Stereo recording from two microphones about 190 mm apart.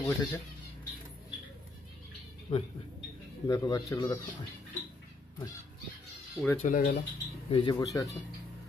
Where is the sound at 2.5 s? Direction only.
25° left (ahead or behind).